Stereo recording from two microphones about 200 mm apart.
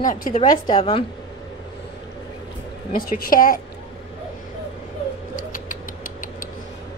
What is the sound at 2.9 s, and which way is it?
Speech, 45° left (ahead or behind).